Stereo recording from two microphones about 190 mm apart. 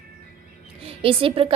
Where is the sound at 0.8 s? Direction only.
30° right (ahead or behind).